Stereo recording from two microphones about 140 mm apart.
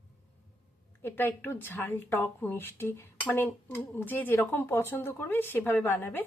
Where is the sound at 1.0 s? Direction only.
15° left (ahead or behind).